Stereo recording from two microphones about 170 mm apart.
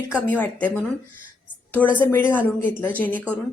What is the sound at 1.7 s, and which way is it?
A woman's voice, 10° left (ahead or behind).